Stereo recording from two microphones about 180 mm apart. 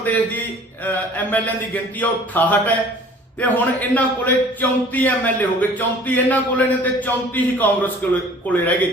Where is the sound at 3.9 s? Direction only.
10° left (ahead or behind).